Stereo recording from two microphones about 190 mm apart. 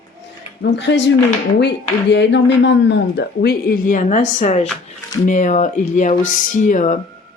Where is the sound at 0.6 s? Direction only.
60° left (ahead or behind).